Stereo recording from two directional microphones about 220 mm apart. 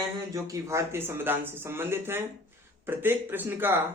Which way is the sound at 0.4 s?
15° right (ahead or behind).